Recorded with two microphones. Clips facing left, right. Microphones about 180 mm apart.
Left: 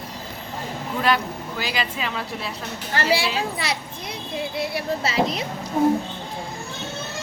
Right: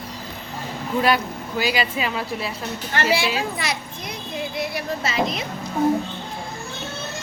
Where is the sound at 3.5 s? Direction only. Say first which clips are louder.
Even; 30° left (ahead or behind).